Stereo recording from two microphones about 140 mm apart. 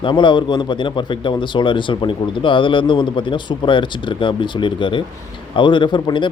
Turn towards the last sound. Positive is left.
turn(degrees=35)  # may be behind; listen again after turning